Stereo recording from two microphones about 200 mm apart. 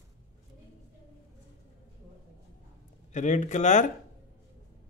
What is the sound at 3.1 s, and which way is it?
Speech, 35° left (ahead or behind).